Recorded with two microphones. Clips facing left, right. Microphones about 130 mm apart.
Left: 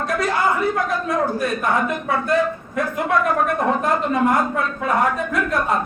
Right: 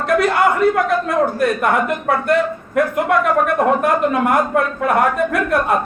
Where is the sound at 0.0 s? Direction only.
65° right (ahead or behind).